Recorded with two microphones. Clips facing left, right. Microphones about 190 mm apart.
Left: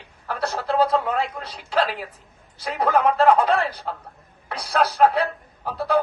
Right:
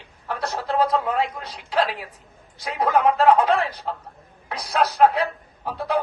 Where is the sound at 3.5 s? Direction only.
30° left (ahead or behind).